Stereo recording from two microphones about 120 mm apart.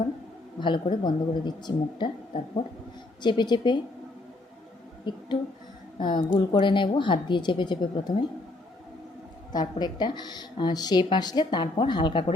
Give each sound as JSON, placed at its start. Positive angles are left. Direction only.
{"t": 0.6, "sound": "a woman's voice", "side_deg": 40}
{"t": 3.2, "sound": "a woman's voice", "side_deg": 40}
{"t": 5.1, "sound": "a woman's voice", "side_deg": 40}
{"t": 9.5, "sound": "a woman's voice", "side_deg": 35}